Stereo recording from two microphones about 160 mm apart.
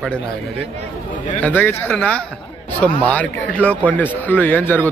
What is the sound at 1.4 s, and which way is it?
Speech, 10° left (ahead or behind).